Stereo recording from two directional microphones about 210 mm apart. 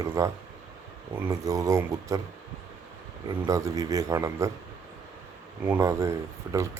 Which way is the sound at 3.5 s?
15° right (ahead or behind).